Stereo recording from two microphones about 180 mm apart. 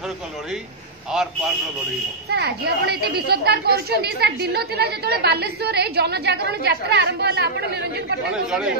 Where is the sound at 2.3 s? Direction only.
65° right (ahead or behind).